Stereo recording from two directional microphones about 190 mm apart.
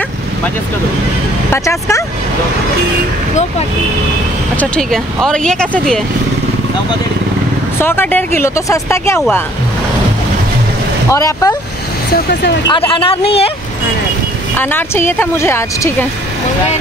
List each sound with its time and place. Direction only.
1.5 s a woman's voice: 15° left (ahead or behind)
4.6 s speech: 5° left (ahead or behind)
7.8 s a woman's voice: 10° left (ahead or behind)
11.1 s a woman's voice: 15° left (ahead or behind)
12.6 s speech: 25° left (ahead or behind)
14.6 s a woman's voice: 10° left (ahead or behind)